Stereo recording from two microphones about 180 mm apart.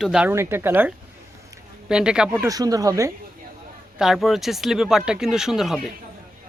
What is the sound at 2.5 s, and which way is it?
Speech, 20° right (ahead or behind).